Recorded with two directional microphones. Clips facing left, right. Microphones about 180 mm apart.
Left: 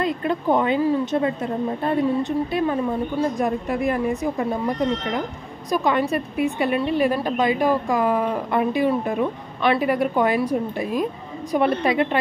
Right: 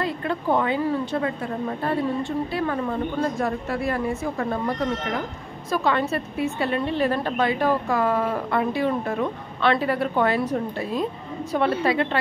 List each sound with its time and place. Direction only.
0.0 s a woman's voice: 20° left (ahead or behind)